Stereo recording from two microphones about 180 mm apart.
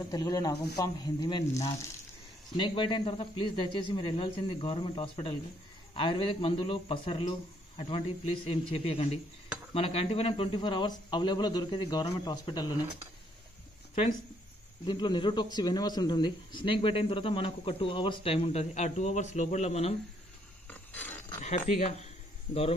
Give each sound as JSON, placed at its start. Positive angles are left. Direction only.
{"t": 0.1, "sound": "a man's voice", "side_deg": 20}
{"t": 14.9, "sound": "a man's voice", "side_deg": 25}
{"t": 20.6, "sound": "a sound", "side_deg": 10}
{"t": 21.4, "sound": "speech", "side_deg": 40}